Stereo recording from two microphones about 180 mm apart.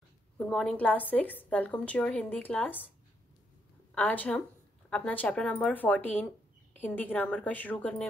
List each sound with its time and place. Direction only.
0.4 s a woman's voice: 5° left (ahead or behind)
3.9 s a woman's voice: 10° left (ahead or behind)